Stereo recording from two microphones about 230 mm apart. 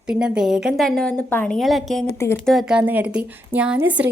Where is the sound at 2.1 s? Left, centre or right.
Centre.